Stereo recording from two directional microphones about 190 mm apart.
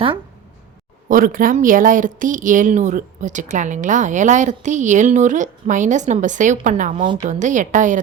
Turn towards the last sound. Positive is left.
turn(degrees=-40)  # may be behind; listen again after turning